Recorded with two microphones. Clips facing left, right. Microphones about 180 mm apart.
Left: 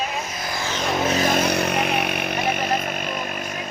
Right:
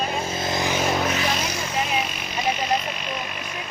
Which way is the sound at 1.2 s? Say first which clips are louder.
Left 6 dB; 50° left (ahead or behind).